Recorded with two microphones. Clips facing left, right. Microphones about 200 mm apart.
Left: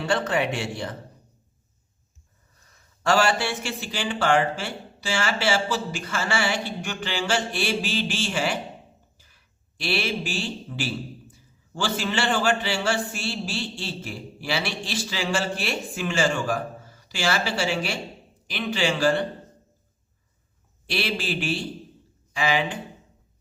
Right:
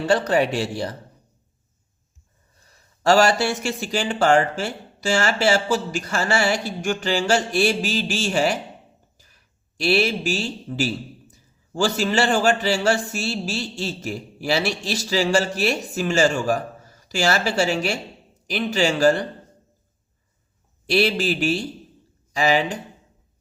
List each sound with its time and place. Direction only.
0.0 s a man's voice: 40° right (ahead or behind)
3.0 s a man's voice: 40° right (ahead or behind)
9.7 s a man's voice: 40° right (ahead or behind)
20.8 s a man's voice: 40° right (ahead or behind)